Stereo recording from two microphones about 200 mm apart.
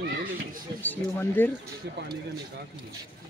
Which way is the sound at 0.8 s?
10° left (ahead or behind).